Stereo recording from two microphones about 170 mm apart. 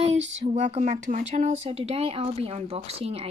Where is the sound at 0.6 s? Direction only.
45° right (ahead or behind).